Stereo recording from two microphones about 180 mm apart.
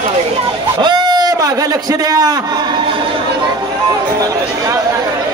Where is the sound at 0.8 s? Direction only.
25° right (ahead or behind).